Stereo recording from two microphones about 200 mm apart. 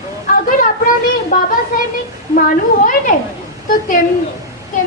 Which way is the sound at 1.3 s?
45° left (ahead or behind).